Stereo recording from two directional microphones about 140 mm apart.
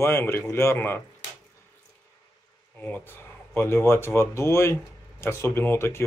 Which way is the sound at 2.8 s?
15° left (ahead or behind).